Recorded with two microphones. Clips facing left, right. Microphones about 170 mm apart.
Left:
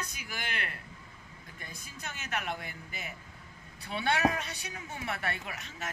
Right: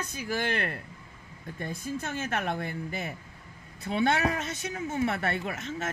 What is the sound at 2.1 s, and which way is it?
Speech, 50° right (ahead or behind).